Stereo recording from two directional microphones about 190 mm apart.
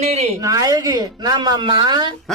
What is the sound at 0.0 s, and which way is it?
Speech, 35° right (ahead or behind).